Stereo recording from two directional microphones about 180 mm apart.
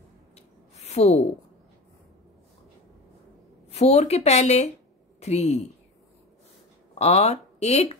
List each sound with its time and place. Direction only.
0.7 s a sound: 35° left (ahead or behind)
3.7 s speech: 40° left (ahead or behind)
7.0 s speech: 35° left (ahead or behind)